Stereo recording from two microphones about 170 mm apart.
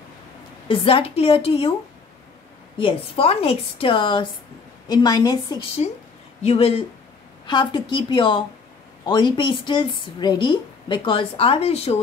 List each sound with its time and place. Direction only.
0.7 s a woman's voice: 35° left (ahead or behind)
2.8 s a woman's voice: 35° left (ahead or behind)
6.4 s a woman's voice: 35° left (ahead or behind)